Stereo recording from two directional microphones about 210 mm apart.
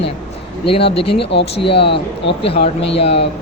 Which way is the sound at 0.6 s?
55° left (ahead or behind).